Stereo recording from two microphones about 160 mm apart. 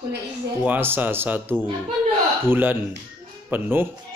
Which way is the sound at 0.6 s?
10° right (ahead or behind).